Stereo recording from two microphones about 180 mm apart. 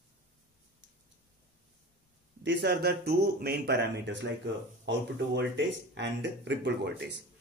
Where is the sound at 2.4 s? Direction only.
75° right (ahead or behind).